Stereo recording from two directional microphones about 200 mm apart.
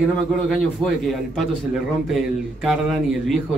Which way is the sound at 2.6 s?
Centre (ahead or behind).